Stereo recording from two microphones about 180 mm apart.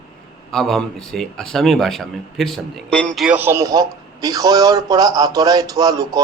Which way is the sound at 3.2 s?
10° right (ahead or behind).